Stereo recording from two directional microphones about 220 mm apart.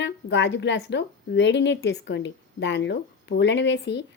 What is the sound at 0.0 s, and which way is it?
A woman's voice, 55° left (ahead or behind).